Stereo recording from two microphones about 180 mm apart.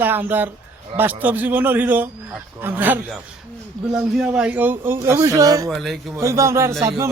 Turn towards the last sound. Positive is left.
turn(degrees=-15)  # may be behind; listen again after turning